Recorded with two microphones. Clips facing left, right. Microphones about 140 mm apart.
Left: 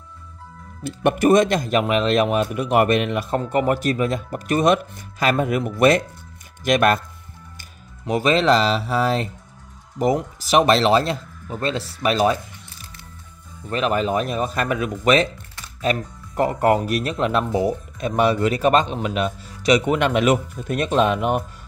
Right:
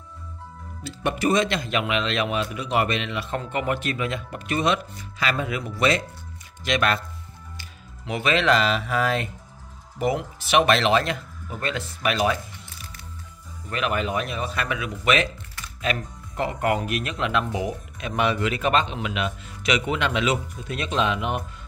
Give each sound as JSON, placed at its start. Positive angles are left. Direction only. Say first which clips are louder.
{"t": 0.8, "sound": "speech", "louder": "left 7 dB", "side_deg": 50}
{"t": 13.7, "sound": "speech", "louder": "left 5 dB", "side_deg": 35}